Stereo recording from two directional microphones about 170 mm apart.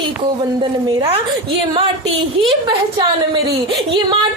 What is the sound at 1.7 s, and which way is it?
Speech, 30° right (ahead or behind).